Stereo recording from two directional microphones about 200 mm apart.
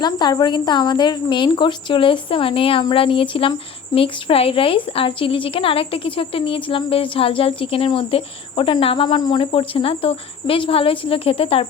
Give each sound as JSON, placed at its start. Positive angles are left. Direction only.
{"t": 0.0, "sound": "a woman's voice", "side_deg": 20}